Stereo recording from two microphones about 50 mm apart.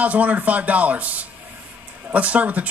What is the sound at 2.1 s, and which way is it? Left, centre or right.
Speech, right.